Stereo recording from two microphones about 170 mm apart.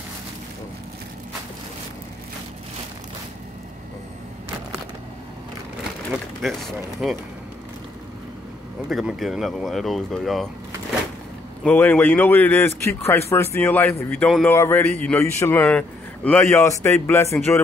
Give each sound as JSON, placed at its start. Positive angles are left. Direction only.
{"t": 6.4, "sound": "speech", "side_deg": 0}
{"t": 8.8, "sound": "speech", "side_deg": 0}
{"t": 11.6, "sound": "a man's voice", "side_deg": 10}